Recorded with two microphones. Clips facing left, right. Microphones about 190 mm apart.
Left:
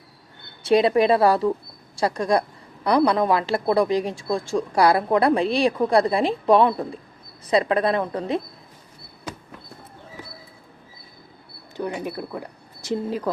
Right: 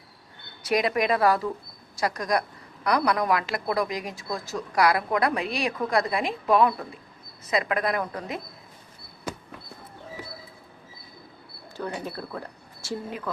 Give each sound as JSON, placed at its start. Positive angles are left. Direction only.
{"t": 0.6, "sound": "a woman's voice", "side_deg": 30}
{"t": 11.8, "sound": "speech", "side_deg": 15}
{"t": 13.1, "sound": "speech", "side_deg": 35}